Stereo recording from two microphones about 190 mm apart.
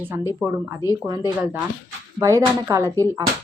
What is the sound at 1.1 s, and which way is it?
Speech, 20° right (ahead or behind).